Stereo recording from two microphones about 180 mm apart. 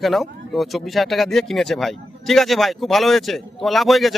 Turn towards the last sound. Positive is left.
turn(degrees=0)  # may be behind; listen again after turning